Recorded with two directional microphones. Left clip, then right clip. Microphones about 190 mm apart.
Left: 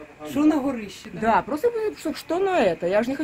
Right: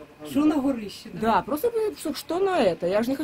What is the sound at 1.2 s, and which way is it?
Speech, 5° left (ahead or behind).